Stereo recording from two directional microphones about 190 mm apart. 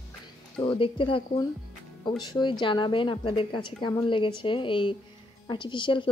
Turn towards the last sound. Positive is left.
turn(degrees=25)  # may be behind; listen again after turning